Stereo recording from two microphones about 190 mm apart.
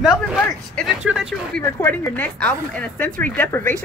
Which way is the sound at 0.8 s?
Centre (ahead or behind).